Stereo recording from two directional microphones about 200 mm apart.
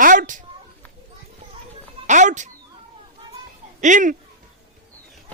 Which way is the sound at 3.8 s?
40° right (ahead or behind).